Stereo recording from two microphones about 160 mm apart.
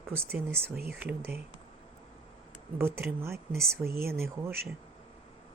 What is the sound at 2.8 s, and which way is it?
Speech, 15° right (ahead or behind).